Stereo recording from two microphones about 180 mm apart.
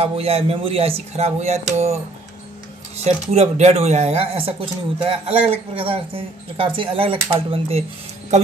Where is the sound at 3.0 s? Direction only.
35° right (ahead or behind).